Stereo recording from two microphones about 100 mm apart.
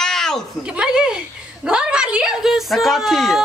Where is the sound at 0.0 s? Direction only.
5° left (ahead or behind).